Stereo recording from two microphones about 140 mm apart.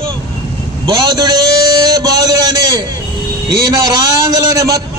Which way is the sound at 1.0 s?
25° right (ahead or behind).